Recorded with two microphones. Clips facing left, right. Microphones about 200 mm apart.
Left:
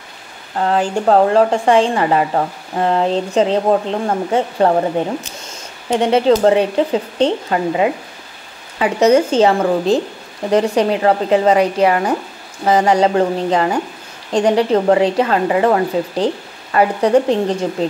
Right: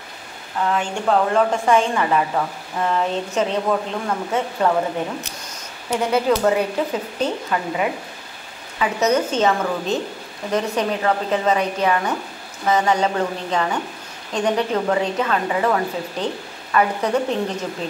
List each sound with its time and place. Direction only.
0.6 s a woman's voice: 35° left (ahead or behind)